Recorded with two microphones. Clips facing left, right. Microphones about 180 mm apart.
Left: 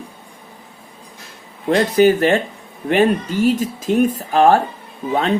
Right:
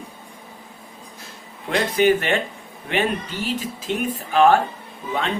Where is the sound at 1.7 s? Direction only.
40° left (ahead or behind).